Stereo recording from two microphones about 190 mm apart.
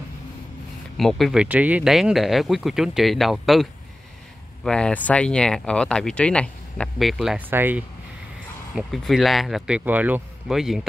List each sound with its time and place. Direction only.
0.9 s speech: centre (ahead or behind)
4.6 s speech: 5° left (ahead or behind)